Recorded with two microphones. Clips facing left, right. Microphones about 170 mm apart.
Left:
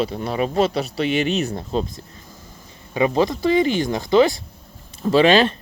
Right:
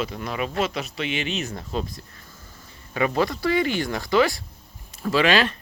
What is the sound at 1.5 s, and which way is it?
Speech, 30° left (ahead or behind).